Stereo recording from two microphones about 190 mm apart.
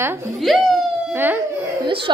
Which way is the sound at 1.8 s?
25° right (ahead or behind).